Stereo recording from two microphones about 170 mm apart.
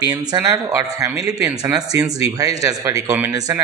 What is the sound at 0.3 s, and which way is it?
Speech, 20° right (ahead or behind).